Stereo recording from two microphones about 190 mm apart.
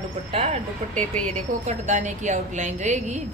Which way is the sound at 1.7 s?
40° right (ahead or behind).